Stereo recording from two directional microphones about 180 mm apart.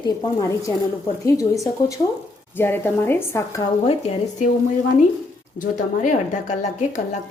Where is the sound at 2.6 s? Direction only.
10° left (ahead or behind).